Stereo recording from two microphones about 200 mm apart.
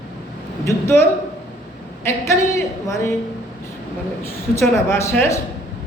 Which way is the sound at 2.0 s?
15° left (ahead or behind).